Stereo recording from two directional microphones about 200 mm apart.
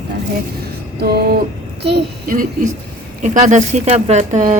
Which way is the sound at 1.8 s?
50° right (ahead or behind).